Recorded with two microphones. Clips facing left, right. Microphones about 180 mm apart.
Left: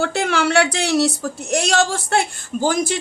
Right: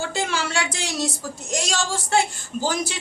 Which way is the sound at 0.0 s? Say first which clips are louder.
Left 7 dB; 65° left (ahead or behind).